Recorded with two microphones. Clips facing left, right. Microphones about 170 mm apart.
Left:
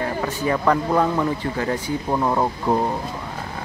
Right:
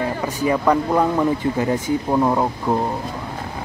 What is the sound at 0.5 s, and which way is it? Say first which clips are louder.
Speech: right 2 dB; 10° right (ahead or behind).